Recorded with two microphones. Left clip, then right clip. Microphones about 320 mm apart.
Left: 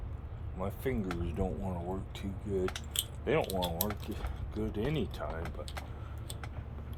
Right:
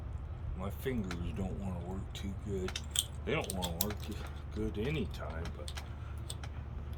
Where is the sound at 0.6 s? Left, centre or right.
Centre.